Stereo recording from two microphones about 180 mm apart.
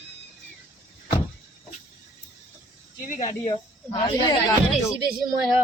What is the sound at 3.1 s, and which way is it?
Speech, 45° left (ahead or behind).